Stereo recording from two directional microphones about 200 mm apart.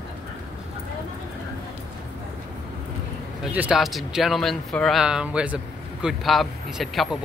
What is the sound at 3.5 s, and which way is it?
Speech, 5° right (ahead or behind).